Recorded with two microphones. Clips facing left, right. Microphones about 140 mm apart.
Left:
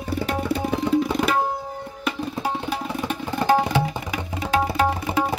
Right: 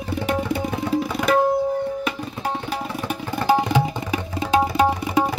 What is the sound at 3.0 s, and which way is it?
Music, 10° right (ahead or behind).